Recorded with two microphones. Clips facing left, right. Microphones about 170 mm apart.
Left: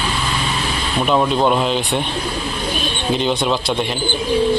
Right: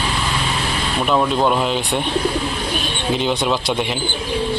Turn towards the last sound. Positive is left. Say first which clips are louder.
# left 1 dB
turn(degrees=0)  # may be behind; listen again after turning